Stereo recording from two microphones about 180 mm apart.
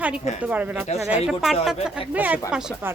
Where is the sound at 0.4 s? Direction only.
5° right (ahead or behind).